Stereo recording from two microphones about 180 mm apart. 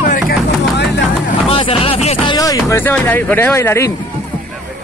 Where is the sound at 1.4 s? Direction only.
30° left (ahead or behind).